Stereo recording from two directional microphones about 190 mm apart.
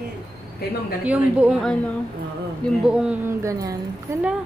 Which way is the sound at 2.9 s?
5° right (ahead or behind).